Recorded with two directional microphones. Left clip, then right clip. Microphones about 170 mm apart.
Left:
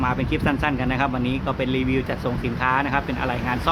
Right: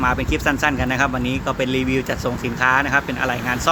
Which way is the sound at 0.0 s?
15° right (ahead or behind).